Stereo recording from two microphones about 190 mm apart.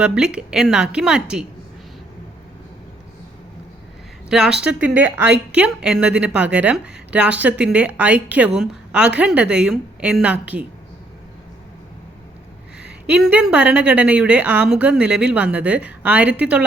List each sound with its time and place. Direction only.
0.0 s a woman's voice: 5° right (ahead or behind)
4.3 s a woman's voice: 5° right (ahead or behind)
12.8 s a woman's voice: 5° right (ahead or behind)